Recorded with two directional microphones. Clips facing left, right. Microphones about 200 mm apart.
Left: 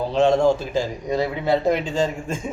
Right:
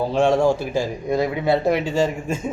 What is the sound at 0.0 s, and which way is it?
A man's voice, 10° right (ahead or behind).